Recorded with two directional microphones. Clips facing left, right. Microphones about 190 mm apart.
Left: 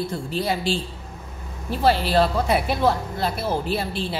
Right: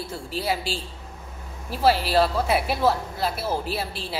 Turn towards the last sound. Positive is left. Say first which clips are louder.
# left 4 dB
turn(degrees=-5)  # may be behind; listen again after turning